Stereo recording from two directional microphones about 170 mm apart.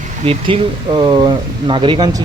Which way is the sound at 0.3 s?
30° right (ahead or behind).